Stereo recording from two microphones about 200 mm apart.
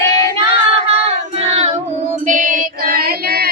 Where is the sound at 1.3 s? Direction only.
30° right (ahead or behind).